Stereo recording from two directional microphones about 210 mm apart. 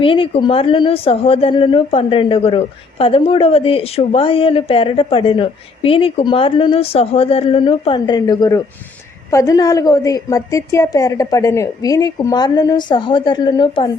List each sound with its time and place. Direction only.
0.0 s a woman's voice: 25° left (ahead or behind)